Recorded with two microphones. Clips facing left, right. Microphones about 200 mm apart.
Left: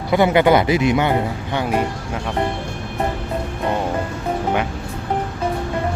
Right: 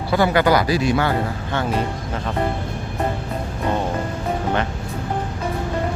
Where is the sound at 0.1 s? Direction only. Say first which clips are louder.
Left 3 dB; 20° left (ahead or behind).